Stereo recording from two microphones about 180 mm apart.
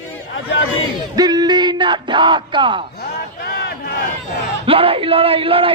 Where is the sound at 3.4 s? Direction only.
65° left (ahead or behind).